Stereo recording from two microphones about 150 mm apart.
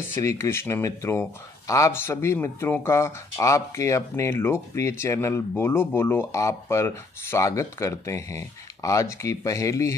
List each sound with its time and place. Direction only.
0.1 s speech: 20° left (ahead or behind)